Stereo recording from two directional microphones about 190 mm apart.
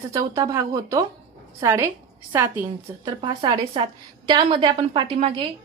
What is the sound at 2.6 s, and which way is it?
A woman's voice, 25° right (ahead or behind).